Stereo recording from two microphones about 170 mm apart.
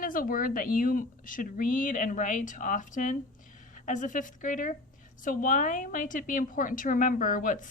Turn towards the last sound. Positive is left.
turn(degrees=50)  # may be behind; listen again after turning